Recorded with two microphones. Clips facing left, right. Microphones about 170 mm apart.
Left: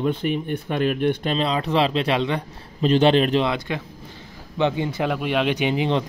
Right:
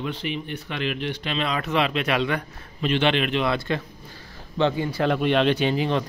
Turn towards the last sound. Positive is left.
turn(degrees=20)  # may be behind; listen again after turning